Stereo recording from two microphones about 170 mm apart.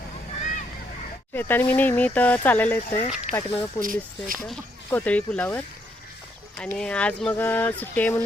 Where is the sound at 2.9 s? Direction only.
40° left (ahead or behind).